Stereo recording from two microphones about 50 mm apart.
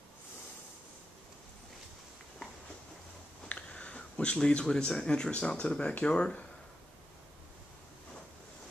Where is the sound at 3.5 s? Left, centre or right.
Left.